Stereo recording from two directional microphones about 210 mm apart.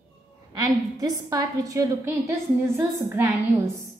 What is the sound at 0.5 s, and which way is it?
A woman's voice, 15° right (ahead or behind).